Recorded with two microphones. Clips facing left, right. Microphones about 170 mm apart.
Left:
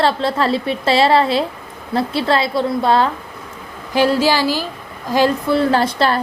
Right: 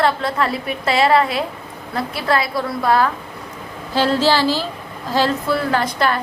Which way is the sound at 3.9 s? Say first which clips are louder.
Left 2 dB; 10° left (ahead or behind).